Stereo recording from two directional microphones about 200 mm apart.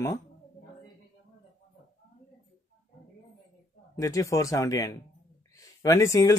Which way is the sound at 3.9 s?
15° left (ahead or behind).